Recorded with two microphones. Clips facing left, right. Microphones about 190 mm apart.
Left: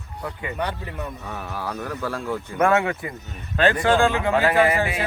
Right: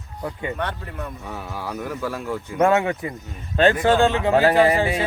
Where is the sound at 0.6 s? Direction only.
Centre (ahead or behind).